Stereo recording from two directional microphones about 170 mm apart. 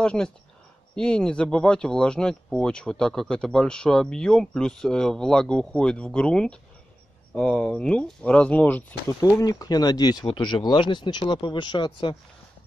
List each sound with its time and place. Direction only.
0.0 s speech: 5° left (ahead or behind)
9.2 s speech: 20° left (ahead or behind)